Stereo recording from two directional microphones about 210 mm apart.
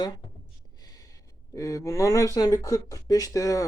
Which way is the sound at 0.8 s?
15° left (ahead or behind).